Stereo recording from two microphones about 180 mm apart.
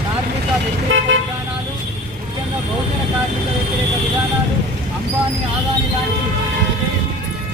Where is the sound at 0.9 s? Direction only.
90° right.